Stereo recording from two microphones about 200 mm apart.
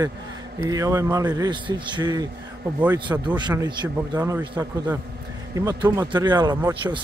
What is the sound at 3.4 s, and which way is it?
Speech, 20° right (ahead or behind).